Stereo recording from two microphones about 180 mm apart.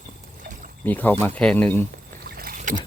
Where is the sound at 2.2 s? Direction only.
55° right (ahead or behind).